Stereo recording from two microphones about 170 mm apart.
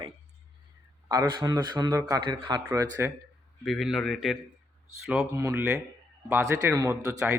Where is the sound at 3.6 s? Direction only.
Centre (ahead or behind).